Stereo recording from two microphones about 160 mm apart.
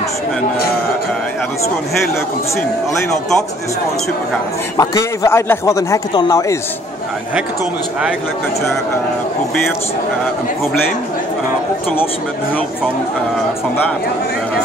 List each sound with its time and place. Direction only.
4.7 s a man's voice: 20° left (ahead or behind)